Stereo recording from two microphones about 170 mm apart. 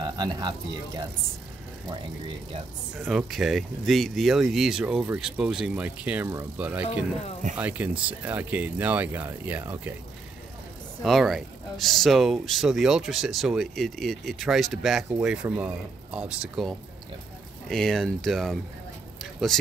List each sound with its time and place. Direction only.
0.0 s speech: 25° right (ahead or behind)
3.0 s speech: centre (ahead or behind)
11.1 s speech: centre (ahead or behind)